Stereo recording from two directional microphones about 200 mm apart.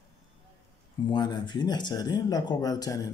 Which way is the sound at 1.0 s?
20° left (ahead or behind).